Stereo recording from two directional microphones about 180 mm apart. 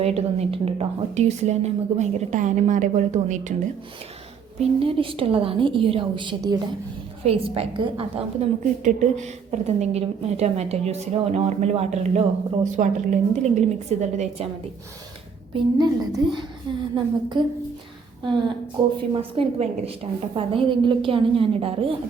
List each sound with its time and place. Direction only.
0.0 s a woman's voice: 35° right (ahead or behind)
4.8 s a woman's voice: 30° right (ahead or behind)
7.3 s a woman's voice: 35° right (ahead or behind)
15.5 s a woman's voice: 25° right (ahead or behind)
18.8 s a woman's voice: 25° right (ahead or behind)